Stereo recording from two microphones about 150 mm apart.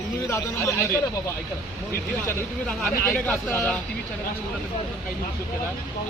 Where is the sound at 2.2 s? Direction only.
15° left (ahead or behind).